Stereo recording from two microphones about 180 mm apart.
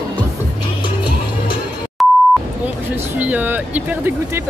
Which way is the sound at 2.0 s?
Centre (ahead or behind).